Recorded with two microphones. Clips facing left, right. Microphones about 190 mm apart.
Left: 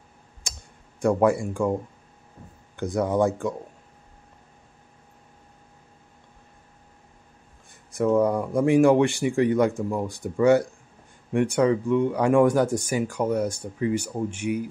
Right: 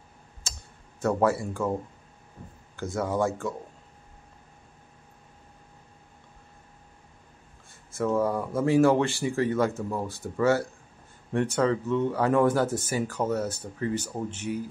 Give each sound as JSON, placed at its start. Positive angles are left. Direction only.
{"t": 0.4, "sound": "computer keyboard", "side_deg": 15}
{"t": 2.7, "sound": "speech", "side_deg": 15}
{"t": 7.9, "sound": "speech", "side_deg": 15}